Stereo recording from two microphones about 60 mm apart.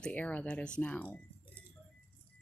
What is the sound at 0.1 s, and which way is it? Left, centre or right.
Speech, left.